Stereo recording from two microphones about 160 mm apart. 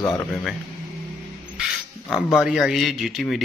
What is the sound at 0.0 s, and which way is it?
Speech, 15° left (ahead or behind).